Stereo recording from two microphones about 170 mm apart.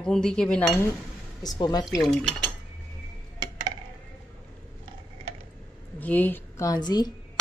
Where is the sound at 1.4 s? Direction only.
25° left (ahead or behind).